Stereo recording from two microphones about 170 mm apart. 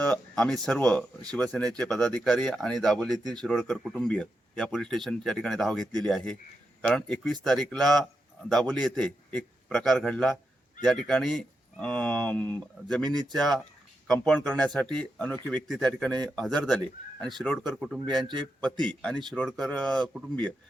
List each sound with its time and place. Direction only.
0.0 s speech: 5° left (ahead or behind)
13.1 s speech: 25° right (ahead or behind)
13.3 s speech: centre (ahead or behind)